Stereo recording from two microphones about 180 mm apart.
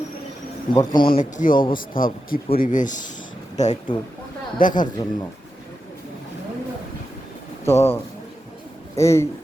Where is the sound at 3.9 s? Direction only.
30° left (ahead or behind).